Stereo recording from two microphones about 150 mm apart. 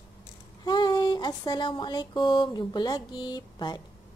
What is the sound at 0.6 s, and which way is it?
A woman's voice, 30° left (ahead or behind).